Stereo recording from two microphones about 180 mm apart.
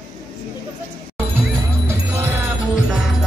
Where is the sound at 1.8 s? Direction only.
10° right (ahead or behind).